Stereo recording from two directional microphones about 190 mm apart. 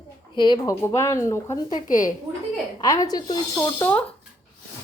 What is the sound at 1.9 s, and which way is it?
Speech, 45° left (ahead or behind).